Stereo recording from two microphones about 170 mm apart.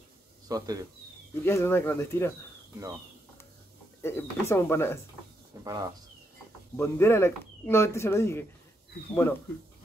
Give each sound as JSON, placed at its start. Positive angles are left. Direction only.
{"t": 0.5, "sound": "speech", "side_deg": -20}
{"t": 1.4, "sound": "speech", "side_deg": 15}
{"t": 4.0, "sound": "speech", "side_deg": 15}
{"t": 5.6, "sound": "speech", "side_deg": -20}
{"t": 6.8, "sound": "speech", "side_deg": 15}